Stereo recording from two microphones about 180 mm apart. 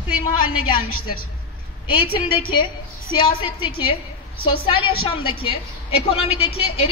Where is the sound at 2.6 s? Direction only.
25° left (ahead or behind).